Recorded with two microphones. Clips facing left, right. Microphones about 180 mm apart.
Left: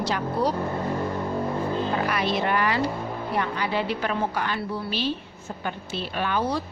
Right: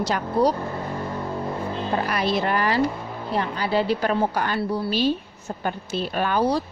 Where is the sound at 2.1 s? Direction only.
40° right (ahead or behind).